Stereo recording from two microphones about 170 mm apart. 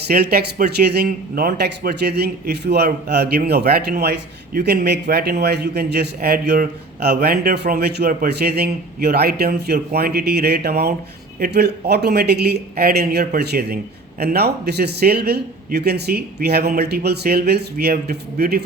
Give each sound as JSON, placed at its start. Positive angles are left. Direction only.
{"t": 0.1, "sound": "a man's voice", "side_deg": -65}